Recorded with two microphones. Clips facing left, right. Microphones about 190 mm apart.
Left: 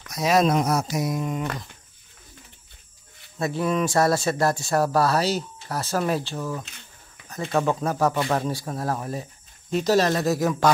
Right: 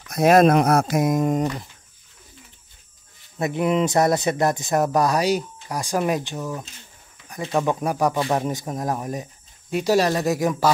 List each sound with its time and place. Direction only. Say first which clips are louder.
0.1 s speech: right 6 dB; 55° right (ahead or behind)
3.3 s speech: right 3 dB; 20° right (ahead or behind)